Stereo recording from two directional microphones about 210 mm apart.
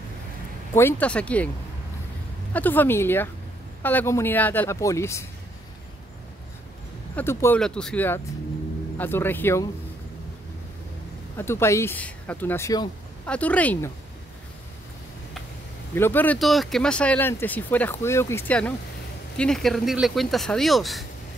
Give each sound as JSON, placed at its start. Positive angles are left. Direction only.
{"t": 0.7, "sound": "speech", "side_deg": 10}
{"t": 2.5, "sound": "speech", "side_deg": 10}
{"t": 7.2, "sound": "speech", "side_deg": 10}
{"t": 11.3, "sound": "speech", "side_deg": 10}
{"t": 15.9, "sound": "speech", "side_deg": 10}